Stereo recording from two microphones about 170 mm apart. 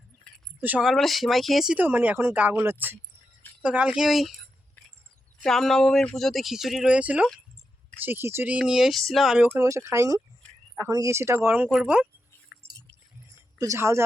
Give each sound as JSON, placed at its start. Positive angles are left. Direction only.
{"t": 0.6, "sound": "speech", "side_deg": -5}
{"t": 9.6, "sound": "speech", "side_deg": -15}
{"t": 12.5, "sound": "a sound", "side_deg": -10}
{"t": 13.6, "sound": "speech", "side_deg": -15}